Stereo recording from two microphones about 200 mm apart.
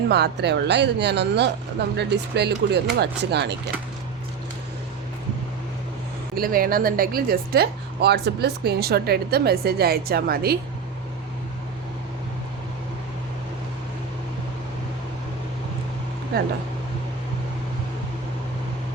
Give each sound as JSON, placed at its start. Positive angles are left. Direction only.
{"t": 0.1, "sound": "speech", "side_deg": -55}
{"t": 6.3, "sound": "speech", "side_deg": -45}